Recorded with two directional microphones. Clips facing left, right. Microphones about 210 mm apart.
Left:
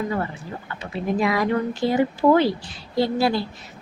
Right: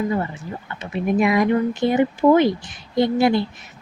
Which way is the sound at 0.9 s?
20° right (ahead or behind).